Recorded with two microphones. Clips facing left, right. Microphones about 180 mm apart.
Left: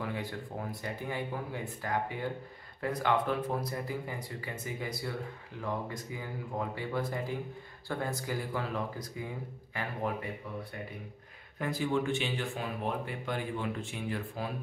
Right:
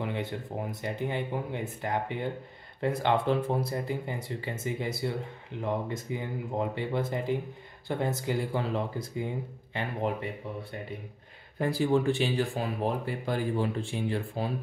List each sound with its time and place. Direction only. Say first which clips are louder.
0.0 s speech: right 4 dB; 20° right (ahead or behind)
11.5 s speech: right 5 dB; 30° right (ahead or behind)